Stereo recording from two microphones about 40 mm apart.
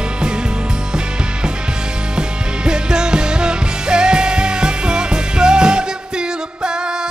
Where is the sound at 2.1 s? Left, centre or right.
Right.